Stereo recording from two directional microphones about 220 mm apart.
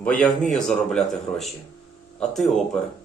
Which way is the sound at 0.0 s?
5° left (ahead or behind).